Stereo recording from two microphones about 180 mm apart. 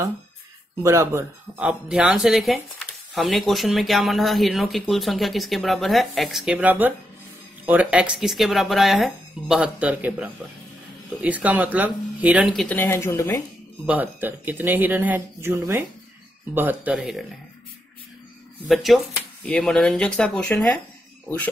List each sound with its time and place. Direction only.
0.8 s speech: 15° right (ahead or behind)
12.6 s speech: 10° left (ahead or behind)
13.8 s speech: 10° right (ahead or behind)
18.7 s speech: centre (ahead or behind)